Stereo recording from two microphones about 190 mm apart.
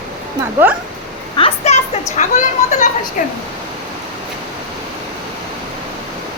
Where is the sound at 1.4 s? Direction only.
30° left (ahead or behind).